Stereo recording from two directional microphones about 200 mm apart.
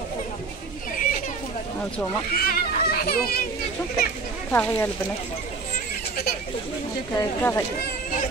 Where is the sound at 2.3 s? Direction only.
50° left (ahead or behind).